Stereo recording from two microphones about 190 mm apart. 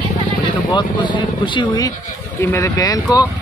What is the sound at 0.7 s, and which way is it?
Speech, 25° left (ahead or behind).